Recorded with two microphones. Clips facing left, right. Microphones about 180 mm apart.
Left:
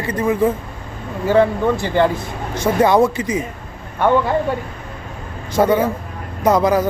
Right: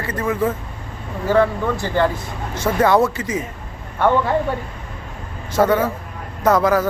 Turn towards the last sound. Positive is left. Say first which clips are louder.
# left 1 dB
turn(degrees=15)  # may be behind; listen again after turning